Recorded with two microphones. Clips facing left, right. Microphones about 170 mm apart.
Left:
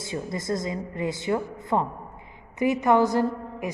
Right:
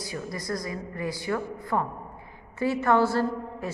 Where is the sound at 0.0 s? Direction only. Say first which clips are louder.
Left 3 dB; 25° left (ahead or behind).